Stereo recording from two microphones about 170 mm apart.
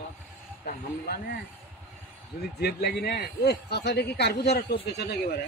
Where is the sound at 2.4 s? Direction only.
70° left (ahead or behind).